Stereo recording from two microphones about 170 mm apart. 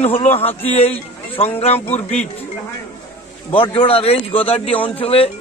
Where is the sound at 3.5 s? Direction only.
30° left (ahead or behind).